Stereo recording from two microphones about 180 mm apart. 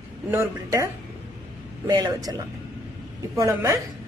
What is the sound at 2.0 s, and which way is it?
Speech, 20° right (ahead or behind).